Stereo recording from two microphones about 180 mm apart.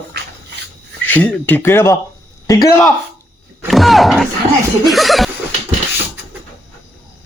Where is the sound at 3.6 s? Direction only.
Centre (ahead or behind).